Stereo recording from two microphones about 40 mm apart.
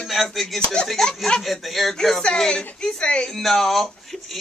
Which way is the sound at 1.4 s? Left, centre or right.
Centre.